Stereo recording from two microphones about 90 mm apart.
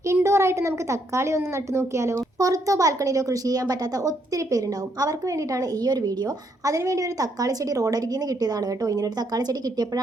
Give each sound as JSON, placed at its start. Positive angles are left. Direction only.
{"t": 0.1, "sound": "a woman's voice", "side_deg": -30}